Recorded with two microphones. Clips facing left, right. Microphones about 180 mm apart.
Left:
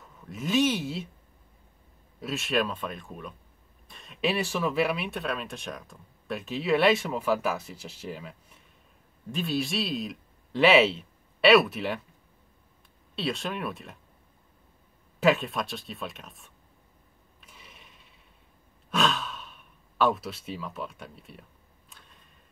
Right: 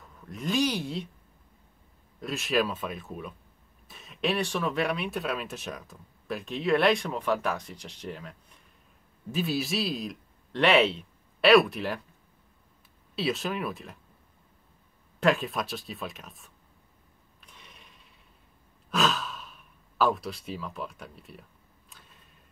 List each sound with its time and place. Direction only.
0.2 s speech: centre (ahead or behind)
2.1 s speech: centre (ahead or behind)
13.1 s speech: centre (ahead or behind)
15.1 s speech: centre (ahead or behind)
17.4 s sewing machine: 5° left (ahead or behind)
18.9 s sigh: centre (ahead or behind)